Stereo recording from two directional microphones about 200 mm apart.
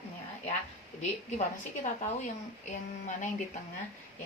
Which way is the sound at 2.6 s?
35° left (ahead or behind).